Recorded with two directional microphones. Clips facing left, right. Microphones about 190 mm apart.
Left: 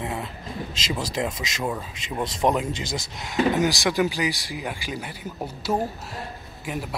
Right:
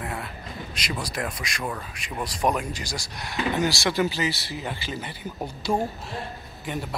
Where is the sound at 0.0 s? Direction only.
20° left (ahead or behind).